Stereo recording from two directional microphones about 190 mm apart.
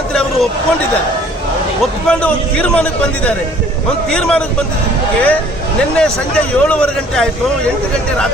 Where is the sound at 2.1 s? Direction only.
5° left (ahead or behind).